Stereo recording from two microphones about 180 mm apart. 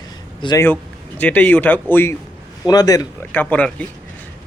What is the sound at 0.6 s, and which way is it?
A man's voice, 10° left (ahead or behind).